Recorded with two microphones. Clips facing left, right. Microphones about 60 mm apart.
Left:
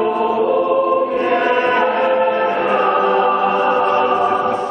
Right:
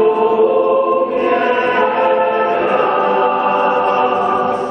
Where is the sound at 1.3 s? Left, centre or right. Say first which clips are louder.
Left 1 dB; centre.